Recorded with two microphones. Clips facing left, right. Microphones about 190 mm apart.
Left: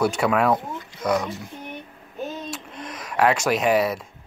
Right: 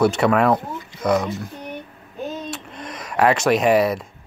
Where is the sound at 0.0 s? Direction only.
10° left (ahead or behind).